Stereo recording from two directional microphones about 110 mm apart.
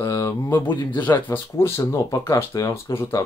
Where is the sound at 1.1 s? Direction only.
20° left (ahead or behind).